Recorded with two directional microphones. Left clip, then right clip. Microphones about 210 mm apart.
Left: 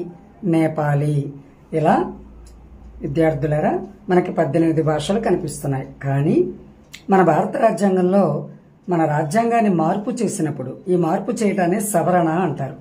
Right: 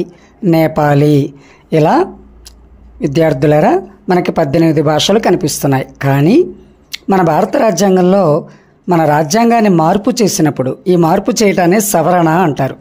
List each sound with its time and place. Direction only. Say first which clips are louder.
0.5 s speech: right 9 dB; 40° right (ahead or behind)